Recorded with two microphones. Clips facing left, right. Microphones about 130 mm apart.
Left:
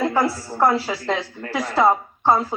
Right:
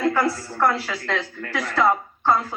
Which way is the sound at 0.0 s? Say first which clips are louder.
Left 1 dB; 25° left (ahead or behind).